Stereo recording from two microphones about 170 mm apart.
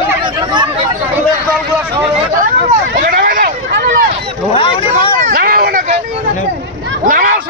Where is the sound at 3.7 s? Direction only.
80° right.